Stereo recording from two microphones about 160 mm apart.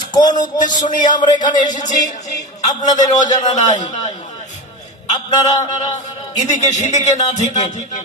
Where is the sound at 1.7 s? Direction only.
50° left (ahead or behind).